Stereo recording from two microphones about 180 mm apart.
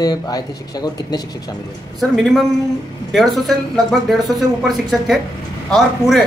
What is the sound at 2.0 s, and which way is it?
Speech, centre (ahead or behind).